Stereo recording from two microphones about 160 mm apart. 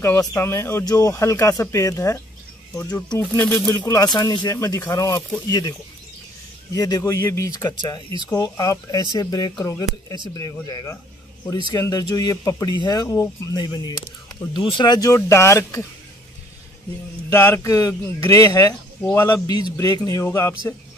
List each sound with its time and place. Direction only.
0.0 s speech: 15° left (ahead or behind)
17.3 s speech: 15° left (ahead or behind)